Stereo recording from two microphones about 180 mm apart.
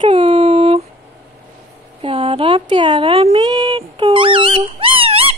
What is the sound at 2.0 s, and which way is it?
Speech, 30° right (ahead or behind).